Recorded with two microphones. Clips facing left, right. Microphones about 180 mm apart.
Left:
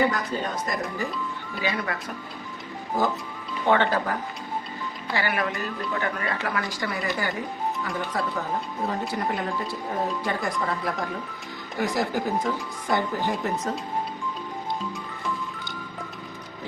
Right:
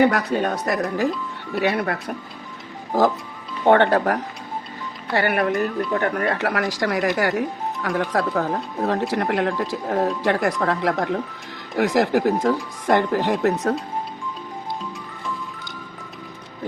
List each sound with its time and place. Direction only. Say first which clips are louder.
0.0 s speech: right 6 dB; 70° right (ahead or behind)
3.9 s speech: right 7 dB; 85° right
5.1 s speech: right 7 dB; 60° right (ahead or behind)
11.8 s speech: right 7 dB; 90° right; by 13.7 s 70° right (ahead or behind)